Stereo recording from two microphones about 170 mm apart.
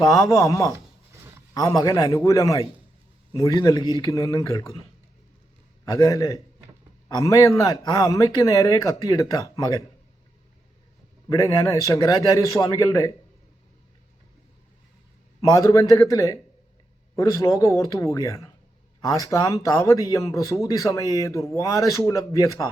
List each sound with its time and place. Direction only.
0.0 s speech: 20° left (ahead or behind)
1.1 s a sound: 15° right (ahead or behind)
1.5 s speech: 20° left (ahead or behind)
5.8 s speech: 20° left (ahead or behind)
11.3 s speech: 20° left (ahead or behind)
15.4 s speech: 20° left (ahead or behind)